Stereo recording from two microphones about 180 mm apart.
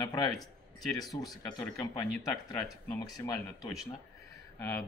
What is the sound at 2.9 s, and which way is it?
Speech, 20° left (ahead or behind).